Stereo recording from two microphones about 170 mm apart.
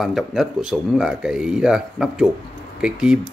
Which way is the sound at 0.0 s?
Centre (ahead or behind).